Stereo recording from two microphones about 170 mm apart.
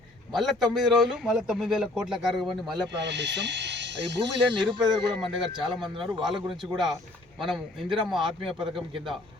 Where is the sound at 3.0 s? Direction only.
90° right.